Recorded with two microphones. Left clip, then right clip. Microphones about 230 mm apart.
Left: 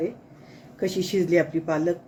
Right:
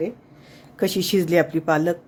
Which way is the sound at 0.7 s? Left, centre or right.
Right.